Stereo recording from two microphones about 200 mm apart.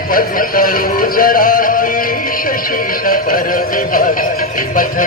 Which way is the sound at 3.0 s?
45° left (ahead or behind).